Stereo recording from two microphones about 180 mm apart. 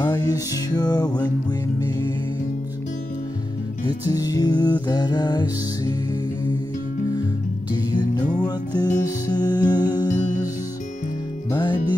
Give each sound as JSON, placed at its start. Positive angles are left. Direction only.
{"t": 0.0, "sound": "music", "side_deg": 20}
{"t": 3.8, "sound": "music", "side_deg": 20}
{"t": 7.7, "sound": "music", "side_deg": 25}
{"t": 11.5, "sound": "music", "side_deg": 25}